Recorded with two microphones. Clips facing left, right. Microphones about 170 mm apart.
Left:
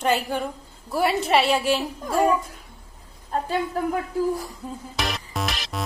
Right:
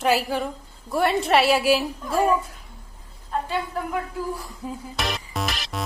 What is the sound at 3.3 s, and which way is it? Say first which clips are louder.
Speech: left 2 dB; 40° left (ahead or behind).